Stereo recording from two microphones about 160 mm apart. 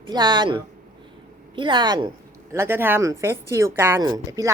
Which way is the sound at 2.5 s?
15° right (ahead or behind).